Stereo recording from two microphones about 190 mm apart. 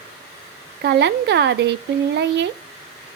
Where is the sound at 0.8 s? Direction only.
65° right (ahead or behind).